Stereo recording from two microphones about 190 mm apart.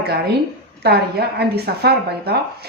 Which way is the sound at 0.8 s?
60° right (ahead or behind).